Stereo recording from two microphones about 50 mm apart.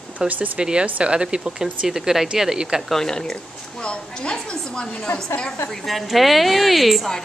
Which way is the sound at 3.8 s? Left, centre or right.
Left.